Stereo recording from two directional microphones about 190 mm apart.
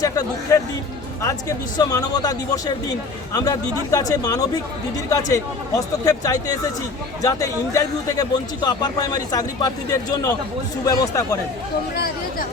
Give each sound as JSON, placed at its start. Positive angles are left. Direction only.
{"t": 0.0, "sound": "speech", "side_deg": 20}
{"t": 11.9, "sound": "speech", "side_deg": 50}